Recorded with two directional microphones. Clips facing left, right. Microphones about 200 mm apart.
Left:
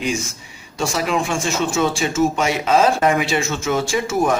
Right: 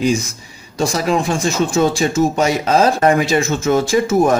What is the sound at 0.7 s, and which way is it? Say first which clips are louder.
Speech: right 4 dB; 40° right (ahead or behind).